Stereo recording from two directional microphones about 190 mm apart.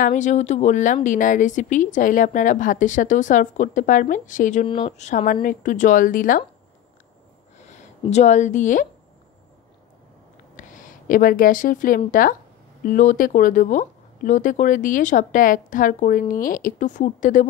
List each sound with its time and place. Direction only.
0.0 s speech: 40° left (ahead or behind)
4.6 s speech: 30° left (ahead or behind); by 6.4 s 45° left (ahead or behind)
7.5 s speech: 35° left (ahead or behind)
10.5 s a sound: 45° left (ahead or behind)
12.1 s speech: 45° left (ahead or behind)